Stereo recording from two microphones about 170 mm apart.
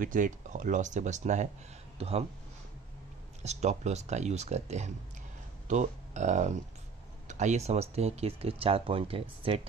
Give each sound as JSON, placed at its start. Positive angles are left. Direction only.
{"t": 0.0, "sound": "speech", "side_deg": -50}
{"t": 3.4, "sound": "speech", "side_deg": -40}